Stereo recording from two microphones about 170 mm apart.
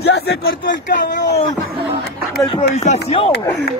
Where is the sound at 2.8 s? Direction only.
40° left (ahead or behind).